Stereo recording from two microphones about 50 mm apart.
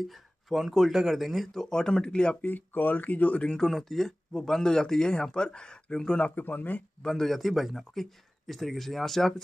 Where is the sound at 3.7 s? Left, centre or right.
Centre.